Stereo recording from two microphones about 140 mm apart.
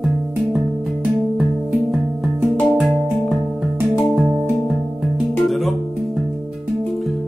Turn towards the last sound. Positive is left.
turn(degrees=0)  # may be behind; listen again after turning